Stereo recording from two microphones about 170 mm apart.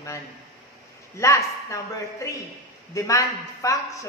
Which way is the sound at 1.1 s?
15° left (ahead or behind).